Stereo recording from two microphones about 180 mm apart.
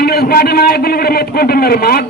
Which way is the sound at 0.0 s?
60° left (ahead or behind).